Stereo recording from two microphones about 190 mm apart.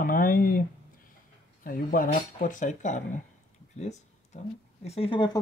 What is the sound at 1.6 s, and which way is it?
Speech, 50° left (ahead or behind).